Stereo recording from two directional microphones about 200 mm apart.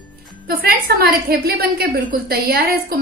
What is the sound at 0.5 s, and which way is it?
A woman's voice, 50° right (ahead or behind).